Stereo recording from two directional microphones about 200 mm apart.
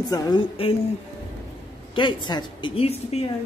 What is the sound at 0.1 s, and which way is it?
Speech, 25° left (ahead or behind).